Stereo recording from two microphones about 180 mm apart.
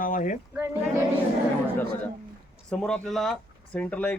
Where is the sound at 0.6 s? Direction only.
15° right (ahead or behind).